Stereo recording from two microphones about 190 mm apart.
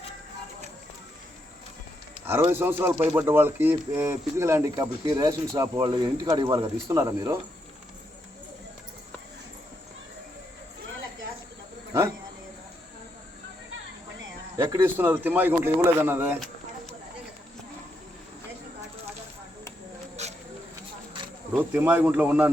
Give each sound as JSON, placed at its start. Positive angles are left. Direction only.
{"t": 2.2, "sound": "speech", "side_deg": -10}
{"t": 14.6, "sound": "speech", "side_deg": -10}
{"t": 21.5, "sound": "speech", "side_deg": -10}